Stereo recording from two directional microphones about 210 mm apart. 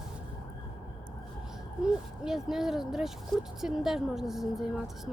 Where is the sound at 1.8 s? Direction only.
5° right (ahead or behind).